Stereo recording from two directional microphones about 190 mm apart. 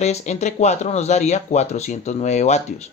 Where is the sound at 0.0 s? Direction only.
35° left (ahead or behind).